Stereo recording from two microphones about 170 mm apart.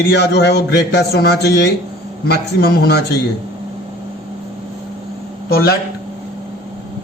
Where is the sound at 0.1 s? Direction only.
75° left (ahead or behind).